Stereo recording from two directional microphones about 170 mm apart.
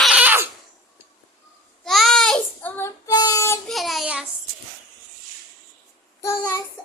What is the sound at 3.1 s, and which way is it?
Child singing, 25° left (ahead or behind).